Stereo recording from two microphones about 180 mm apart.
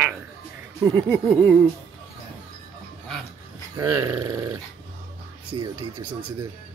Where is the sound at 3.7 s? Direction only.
20° right (ahead or behind).